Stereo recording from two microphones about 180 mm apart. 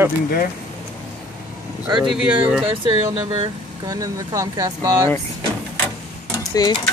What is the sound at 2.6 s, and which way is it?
Speech, 30° right (ahead or behind).